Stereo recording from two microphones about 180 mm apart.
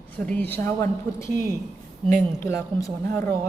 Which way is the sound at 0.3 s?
10° left (ahead or behind).